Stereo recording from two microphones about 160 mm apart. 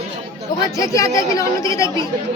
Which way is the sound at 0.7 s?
20° left (ahead or behind).